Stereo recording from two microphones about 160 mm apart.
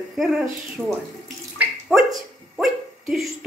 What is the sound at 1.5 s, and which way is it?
Water, 10° right (ahead or behind).